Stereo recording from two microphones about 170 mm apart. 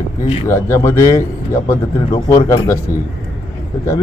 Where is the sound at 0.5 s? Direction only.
15° left (ahead or behind).